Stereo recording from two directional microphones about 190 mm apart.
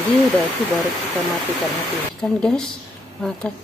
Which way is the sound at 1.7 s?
5° left (ahead or behind).